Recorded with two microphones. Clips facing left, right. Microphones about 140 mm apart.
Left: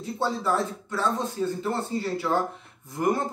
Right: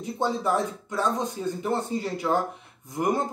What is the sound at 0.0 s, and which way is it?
Speech, 15° right (ahead or behind).